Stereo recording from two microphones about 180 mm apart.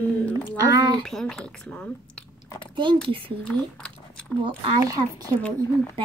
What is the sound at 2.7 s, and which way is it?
Speech, 25° right (ahead or behind).